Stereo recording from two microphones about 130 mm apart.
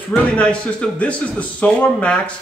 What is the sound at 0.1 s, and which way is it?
A man's voice, 10° left (ahead or behind).